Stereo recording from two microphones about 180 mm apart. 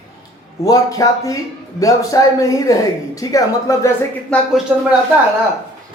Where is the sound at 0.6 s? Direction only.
20° left (ahead or behind).